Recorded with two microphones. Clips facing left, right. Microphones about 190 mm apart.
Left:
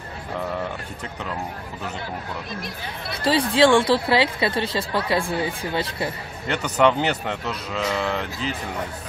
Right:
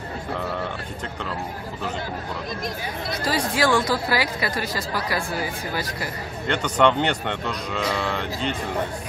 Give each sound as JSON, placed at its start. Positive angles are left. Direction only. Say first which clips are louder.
{"t": 3.1, "sound": "speech", "louder": "left 4 dB", "side_deg": 30}
{"t": 6.4, "sound": "speech", "louder": "even", "side_deg": 5}